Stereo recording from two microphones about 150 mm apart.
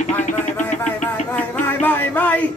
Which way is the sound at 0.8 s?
10° left (ahead or behind).